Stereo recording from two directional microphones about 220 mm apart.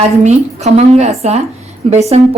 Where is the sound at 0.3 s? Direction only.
30° right (ahead or behind).